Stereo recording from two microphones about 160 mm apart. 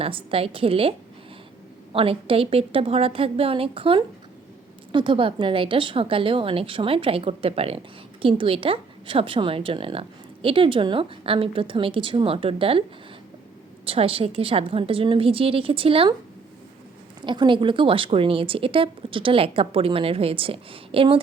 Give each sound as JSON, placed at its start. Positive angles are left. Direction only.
{"t": 0.0, "sound": "a woman's voice", "side_deg": -35}
{"t": 13.8, "sound": "a woman's voice", "side_deg": -35}
{"t": 17.2, "sound": "a woman's voice", "side_deg": -30}